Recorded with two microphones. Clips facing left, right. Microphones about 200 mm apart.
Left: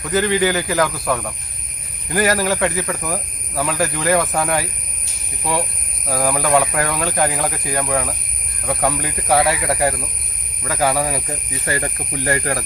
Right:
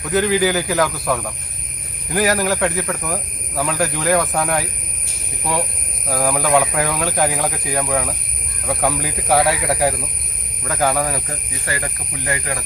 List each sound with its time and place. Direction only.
0.0 s speech: centre (ahead or behind)
6.1 s speech: centre (ahead or behind)
11.6 s speech: 25° left (ahead or behind)
12.3 s speech: 45° left (ahead or behind)